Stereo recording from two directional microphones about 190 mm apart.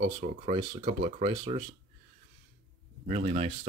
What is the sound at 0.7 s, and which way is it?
Speech, 30° right (ahead or behind).